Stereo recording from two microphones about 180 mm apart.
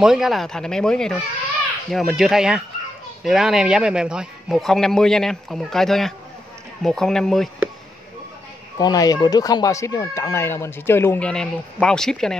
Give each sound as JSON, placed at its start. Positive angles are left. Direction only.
{"t": 0.0, "sound": "a man's voice", "side_deg": 0}
{"t": 8.7, "sound": "speech", "side_deg": 20}